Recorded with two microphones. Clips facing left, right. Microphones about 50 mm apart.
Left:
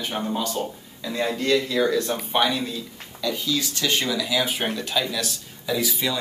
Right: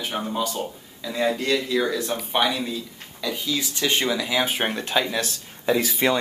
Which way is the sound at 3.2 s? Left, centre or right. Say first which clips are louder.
Left 1 dB; centre.